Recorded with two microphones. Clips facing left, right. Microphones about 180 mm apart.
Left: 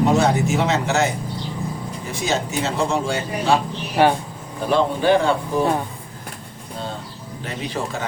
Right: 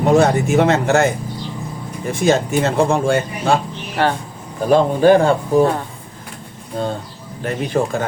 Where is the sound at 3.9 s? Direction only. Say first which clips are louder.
Left 2 dB; 15° left (ahead or behind).